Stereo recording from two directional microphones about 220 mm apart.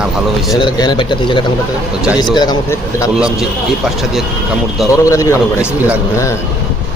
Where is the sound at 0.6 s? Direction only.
20° left (ahead or behind).